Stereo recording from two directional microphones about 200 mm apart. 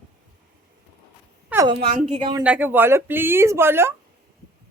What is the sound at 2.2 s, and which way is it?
Speech, 25° right (ahead or behind).